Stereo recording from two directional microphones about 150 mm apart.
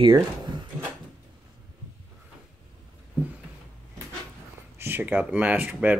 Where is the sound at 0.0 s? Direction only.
30° right (ahead or behind).